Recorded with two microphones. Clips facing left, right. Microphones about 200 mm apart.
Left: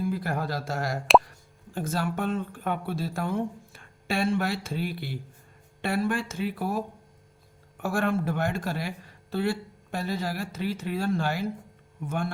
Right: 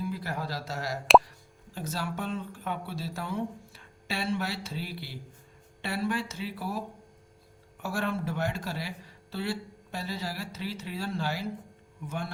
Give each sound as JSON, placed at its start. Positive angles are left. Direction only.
{"t": 0.1, "sound": "speech", "side_deg": 50}